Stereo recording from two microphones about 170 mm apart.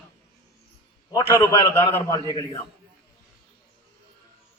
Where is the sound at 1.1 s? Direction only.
20° left (ahead or behind).